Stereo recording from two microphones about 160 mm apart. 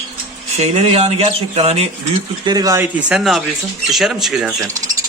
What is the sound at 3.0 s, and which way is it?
Speech, 5° right (ahead or behind).